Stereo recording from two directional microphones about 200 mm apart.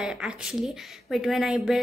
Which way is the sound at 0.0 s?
5° right (ahead or behind).